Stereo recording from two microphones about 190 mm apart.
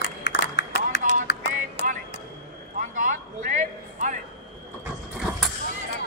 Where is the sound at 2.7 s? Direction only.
45° right (ahead or behind).